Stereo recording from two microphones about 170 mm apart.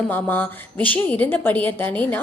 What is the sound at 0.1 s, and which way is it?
A woman's voice, 10° left (ahead or behind).